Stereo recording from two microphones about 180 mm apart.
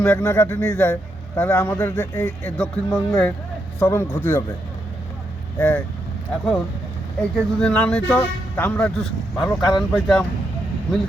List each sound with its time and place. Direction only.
0.0 s speech: 10° left (ahead or behind)
5.5 s speech: 5° left (ahead or behind)
7.2 s speech: 5° left (ahead or behind)
9.5 s a man's voice: 20° left (ahead or behind)
9.9 s speech: centre (ahead or behind)